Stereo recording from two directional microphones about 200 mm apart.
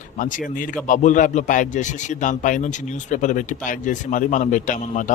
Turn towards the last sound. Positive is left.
turn(degrees=40)  # may be behind; listen again after turning